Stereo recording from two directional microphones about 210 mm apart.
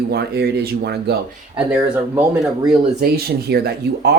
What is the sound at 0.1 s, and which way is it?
Speech, 50° right (ahead or behind).